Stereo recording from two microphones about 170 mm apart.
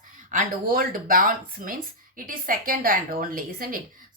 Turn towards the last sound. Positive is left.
turn(degrees=-55)  # may be behind; listen again after turning